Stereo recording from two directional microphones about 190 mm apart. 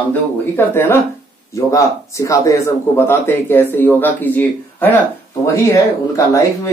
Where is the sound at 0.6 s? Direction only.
10° left (ahead or behind).